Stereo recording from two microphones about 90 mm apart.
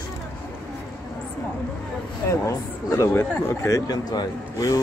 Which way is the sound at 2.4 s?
35° left (ahead or behind).